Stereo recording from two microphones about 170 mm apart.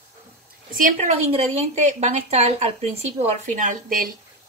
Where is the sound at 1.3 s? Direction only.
40° right (ahead or behind).